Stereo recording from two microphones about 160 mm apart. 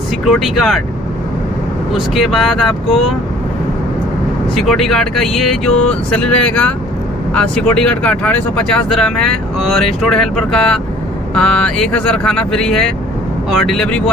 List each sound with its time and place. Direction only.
0.2 s speech: centre (ahead or behind)
2.0 s speech: centre (ahead or behind)
4.6 s speech: centre (ahead or behind)